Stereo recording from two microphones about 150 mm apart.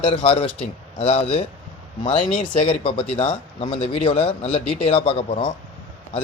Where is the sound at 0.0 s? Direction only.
35° left (ahead or behind).